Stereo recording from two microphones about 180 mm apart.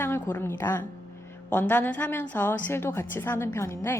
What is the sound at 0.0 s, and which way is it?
A woman's voice, 10° left (ahead or behind).